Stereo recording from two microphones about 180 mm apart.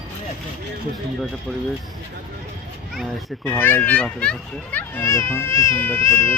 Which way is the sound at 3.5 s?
10° left (ahead or behind).